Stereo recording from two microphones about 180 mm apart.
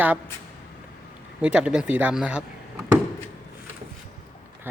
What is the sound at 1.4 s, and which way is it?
Speech, 5° right (ahead or behind).